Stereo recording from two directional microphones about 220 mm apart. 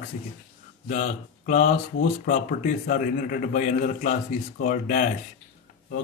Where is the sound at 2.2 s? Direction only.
40° left (ahead or behind).